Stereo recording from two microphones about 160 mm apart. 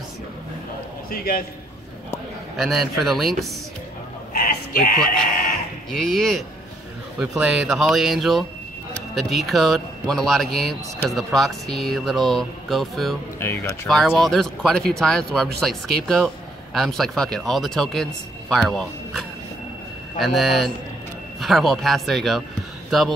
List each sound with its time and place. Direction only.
1.1 s a man's voice: 65° left (ahead or behind)
2.5 s speech: centre (ahead or behind)
4.3 s a sound: 65° left (ahead or behind)
5.9 s speech: centre (ahead or behind)
13.4 s speech: 15° left (ahead or behind)
13.8 s a man's voice: centre (ahead or behind)